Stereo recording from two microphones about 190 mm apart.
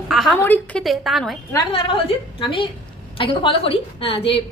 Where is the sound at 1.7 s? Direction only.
25° left (ahead or behind).